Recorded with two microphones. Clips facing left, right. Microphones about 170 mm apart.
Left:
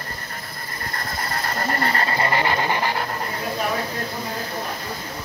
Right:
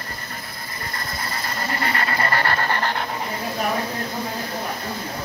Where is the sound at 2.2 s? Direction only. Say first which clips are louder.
Left 1 dB; 15° left (ahead or behind).